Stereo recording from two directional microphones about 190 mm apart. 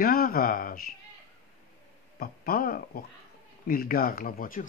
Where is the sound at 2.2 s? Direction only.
50° left (ahead or behind).